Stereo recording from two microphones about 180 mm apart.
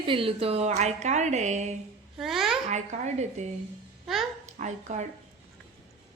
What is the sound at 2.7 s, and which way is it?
A woman's voice, 40° right (ahead or behind).